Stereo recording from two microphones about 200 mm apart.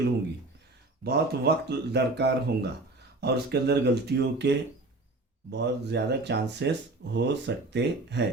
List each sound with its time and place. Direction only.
1.0 s speech: 55° right (ahead or behind)